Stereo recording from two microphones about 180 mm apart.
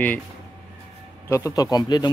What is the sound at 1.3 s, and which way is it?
Speech, 20° left (ahead or behind).